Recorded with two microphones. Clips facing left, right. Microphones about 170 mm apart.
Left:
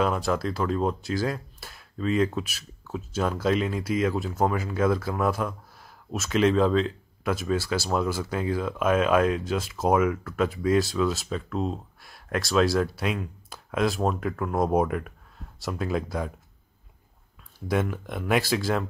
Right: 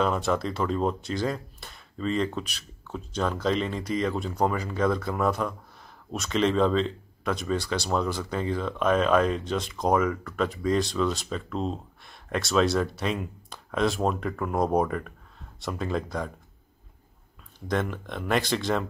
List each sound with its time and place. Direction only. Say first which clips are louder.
0.0 s speech: even; centre (ahead or behind)
17.6 s speech: left 2 dB; 10° left (ahead or behind)